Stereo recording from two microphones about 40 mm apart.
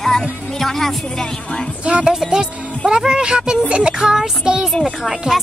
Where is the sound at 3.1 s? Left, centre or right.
Centre.